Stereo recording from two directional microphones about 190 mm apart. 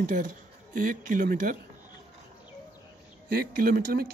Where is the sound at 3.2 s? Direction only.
50° right (ahead or behind).